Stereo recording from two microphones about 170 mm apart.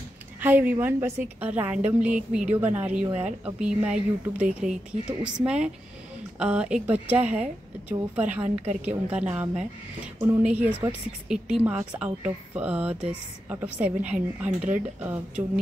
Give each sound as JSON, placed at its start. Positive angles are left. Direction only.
{"t": 0.4, "sound": "a woman's voice", "side_deg": -10}
{"t": 3.1, "sound": "speech", "side_deg": -40}
{"t": 3.4, "sound": "a woman's voice", "side_deg": -5}